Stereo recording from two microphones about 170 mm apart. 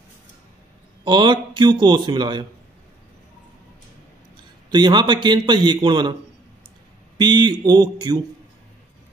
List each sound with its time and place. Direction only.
1.0 s a man's voice: 25° right (ahead or behind)
4.6 s a man's voice: 25° right (ahead or behind)
7.2 s a man's voice: 25° right (ahead or behind)